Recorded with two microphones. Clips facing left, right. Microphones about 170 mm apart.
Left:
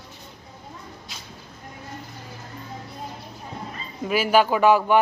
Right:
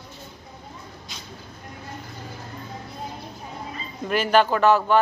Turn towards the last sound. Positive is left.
turn(degrees=10)  # may be behind; listen again after turning